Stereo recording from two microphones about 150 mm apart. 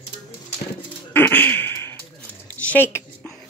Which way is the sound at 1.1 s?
15° left (ahead or behind).